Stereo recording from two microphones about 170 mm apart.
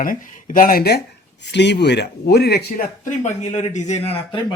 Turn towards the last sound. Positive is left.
turn(degrees=35)  # may be behind; listen again after turning